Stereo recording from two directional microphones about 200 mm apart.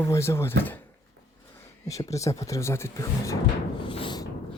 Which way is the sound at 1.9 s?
15° left (ahead or behind).